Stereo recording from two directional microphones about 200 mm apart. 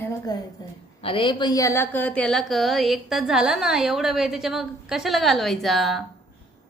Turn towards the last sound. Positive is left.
turn(degrees=0)  # may be behind; listen again after turning